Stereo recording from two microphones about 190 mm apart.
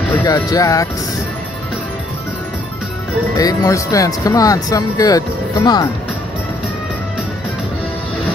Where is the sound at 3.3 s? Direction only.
20° left (ahead or behind).